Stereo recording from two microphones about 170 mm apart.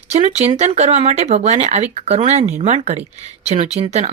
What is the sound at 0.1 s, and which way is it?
Speech, 40° right (ahead or behind).